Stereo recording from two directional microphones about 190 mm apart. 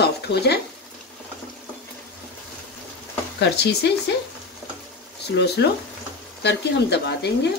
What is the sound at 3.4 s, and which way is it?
Speech, 60° left (ahead or behind).